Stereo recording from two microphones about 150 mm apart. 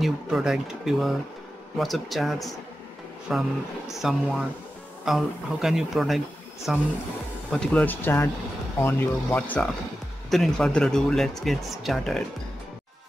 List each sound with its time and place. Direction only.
0.0 s speech: 5° right (ahead or behind)